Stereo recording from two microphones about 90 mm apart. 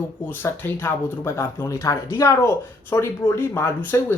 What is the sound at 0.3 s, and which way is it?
A woman's voice, 25° left (ahead or behind).